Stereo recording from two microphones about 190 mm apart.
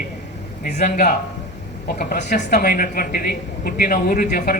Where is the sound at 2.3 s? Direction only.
40° left (ahead or behind).